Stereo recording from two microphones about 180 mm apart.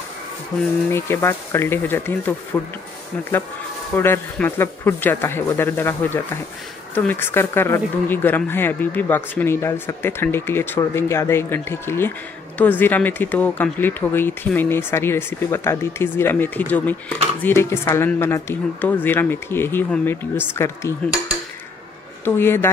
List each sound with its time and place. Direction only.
0.9 s speech: 15° left (ahead or behind)
3.9 s speech: 10° left (ahead or behind)
22.2 s speech: 10° left (ahead or behind)